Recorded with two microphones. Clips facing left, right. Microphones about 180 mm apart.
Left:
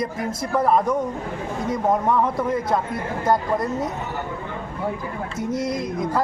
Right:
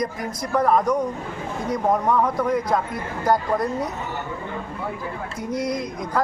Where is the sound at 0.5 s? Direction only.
5° left (ahead or behind).